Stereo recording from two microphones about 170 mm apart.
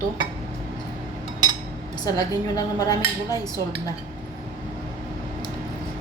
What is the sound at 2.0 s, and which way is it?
Speech, 20° left (ahead or behind).